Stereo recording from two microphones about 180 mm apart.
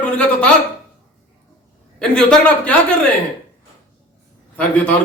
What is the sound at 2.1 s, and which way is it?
Speech, 5° left (ahead or behind).